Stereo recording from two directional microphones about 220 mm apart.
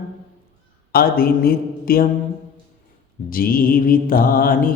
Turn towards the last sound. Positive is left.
turn(degrees=40)  # may be behind; listen again after turning